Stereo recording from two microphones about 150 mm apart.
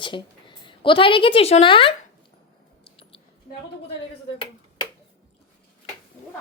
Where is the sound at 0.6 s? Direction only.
35° left (ahead or behind).